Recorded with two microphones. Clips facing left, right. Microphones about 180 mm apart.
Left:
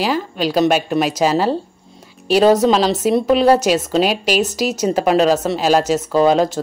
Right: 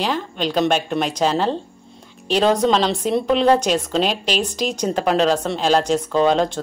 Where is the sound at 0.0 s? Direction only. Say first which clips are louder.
Left 3 dB; 5° left (ahead or behind).